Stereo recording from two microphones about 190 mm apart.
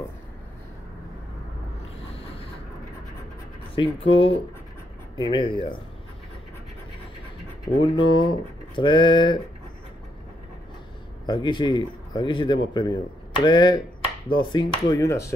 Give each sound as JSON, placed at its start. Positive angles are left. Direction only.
{"t": 3.7, "sound": "a man's voice", "side_deg": 30}
{"t": 7.8, "sound": "a man's voice", "side_deg": 25}
{"t": 11.2, "sound": "a man's voice", "side_deg": 25}